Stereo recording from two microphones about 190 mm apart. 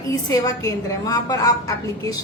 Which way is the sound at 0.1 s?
20° left (ahead or behind).